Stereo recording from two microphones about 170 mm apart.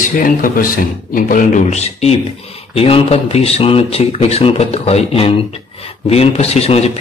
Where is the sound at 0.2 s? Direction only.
55° left (ahead or behind).